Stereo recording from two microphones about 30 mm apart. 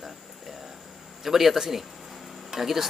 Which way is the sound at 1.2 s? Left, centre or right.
Centre.